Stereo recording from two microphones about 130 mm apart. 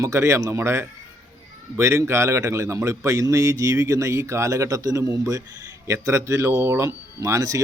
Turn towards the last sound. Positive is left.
turn(degrees=-25)  # may be behind; listen again after turning